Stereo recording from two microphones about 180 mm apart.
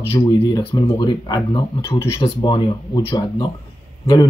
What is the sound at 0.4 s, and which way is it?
Speech, 25° left (ahead or behind).